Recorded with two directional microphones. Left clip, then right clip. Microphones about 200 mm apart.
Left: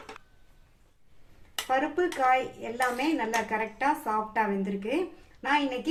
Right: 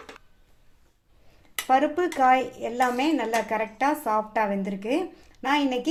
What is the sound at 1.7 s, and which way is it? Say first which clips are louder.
A woman's voice: right 5 dB; 35° right (ahead or behind).